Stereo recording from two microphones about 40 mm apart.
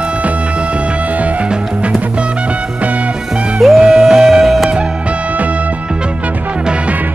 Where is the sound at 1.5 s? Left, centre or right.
Right.